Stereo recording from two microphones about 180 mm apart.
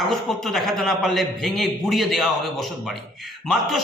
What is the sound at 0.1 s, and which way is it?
A man's voice, centre (ahead or behind).